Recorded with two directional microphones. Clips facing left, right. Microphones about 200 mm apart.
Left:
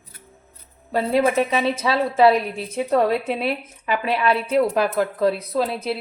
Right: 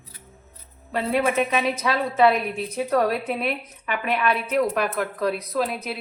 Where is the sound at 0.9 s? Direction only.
35° left (ahead or behind).